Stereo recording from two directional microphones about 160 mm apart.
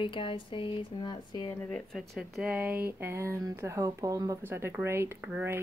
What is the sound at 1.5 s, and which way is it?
Speech, 15° left (ahead or behind).